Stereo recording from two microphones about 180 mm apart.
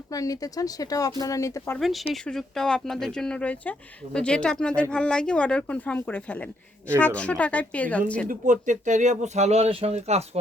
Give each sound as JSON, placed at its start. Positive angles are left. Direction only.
{"t": 0.1, "sound": "speech", "side_deg": 20}
{"t": 1.8, "sound": "speech", "side_deg": 0}
{"t": 8.3, "sound": "speech", "side_deg": -45}